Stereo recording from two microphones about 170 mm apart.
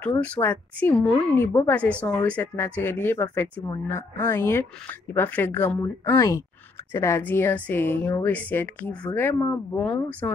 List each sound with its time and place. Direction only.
0.0 s a woman's voice: 10° left (ahead or behind)